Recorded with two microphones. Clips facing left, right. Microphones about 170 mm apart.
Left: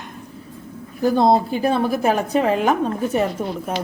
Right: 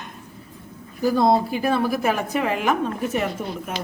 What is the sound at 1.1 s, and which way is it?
A woman's voice, 25° left (ahead or behind).